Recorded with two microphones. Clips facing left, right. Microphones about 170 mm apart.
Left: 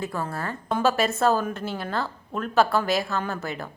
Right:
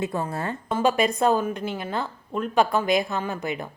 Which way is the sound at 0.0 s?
20° right (ahead or behind).